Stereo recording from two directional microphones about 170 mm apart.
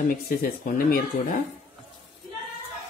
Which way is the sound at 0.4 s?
60° left (ahead or behind).